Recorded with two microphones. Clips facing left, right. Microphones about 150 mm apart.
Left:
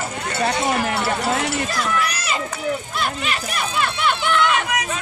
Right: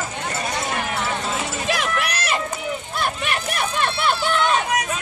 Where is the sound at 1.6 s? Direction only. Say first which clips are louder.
Left 1 dB; 70° right (ahead or behind).